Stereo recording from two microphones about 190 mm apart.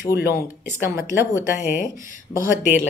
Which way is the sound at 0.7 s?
15° right (ahead or behind).